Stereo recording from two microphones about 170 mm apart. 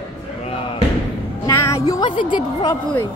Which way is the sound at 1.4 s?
15° left (ahead or behind).